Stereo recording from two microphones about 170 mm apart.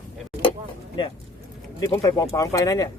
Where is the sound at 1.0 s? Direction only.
25° left (ahead or behind).